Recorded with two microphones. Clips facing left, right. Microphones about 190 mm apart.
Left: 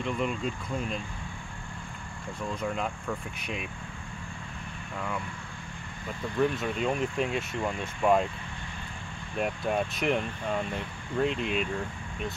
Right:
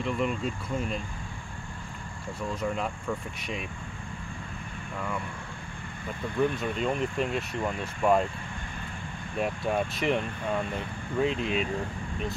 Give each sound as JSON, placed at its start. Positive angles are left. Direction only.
{"t": 0.0, "sound": "speech", "side_deg": 0}
{"t": 2.6, "sound": "speech", "side_deg": 0}
{"t": 6.5, "sound": "speech", "side_deg": 0}
{"t": 9.4, "sound": "speech", "side_deg": 0}